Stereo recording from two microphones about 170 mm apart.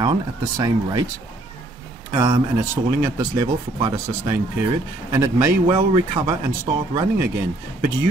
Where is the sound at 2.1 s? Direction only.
15° right (ahead or behind).